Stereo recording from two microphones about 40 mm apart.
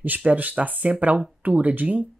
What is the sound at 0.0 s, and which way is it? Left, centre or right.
Speech, right.